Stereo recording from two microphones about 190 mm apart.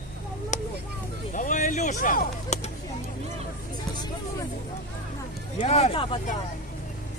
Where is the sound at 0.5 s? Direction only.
40° left (ahead or behind).